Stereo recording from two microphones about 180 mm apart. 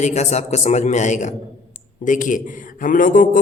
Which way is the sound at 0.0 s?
40° left (ahead or behind).